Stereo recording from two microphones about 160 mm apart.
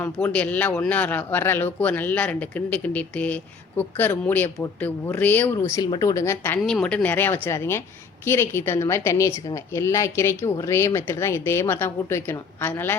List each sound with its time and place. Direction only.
0.0 s speech: 10° left (ahead or behind)